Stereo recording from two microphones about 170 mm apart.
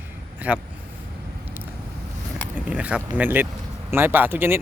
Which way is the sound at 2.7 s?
5° right (ahead or behind).